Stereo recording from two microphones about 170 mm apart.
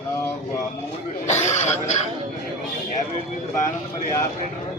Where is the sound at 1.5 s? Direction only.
45° left (ahead or behind).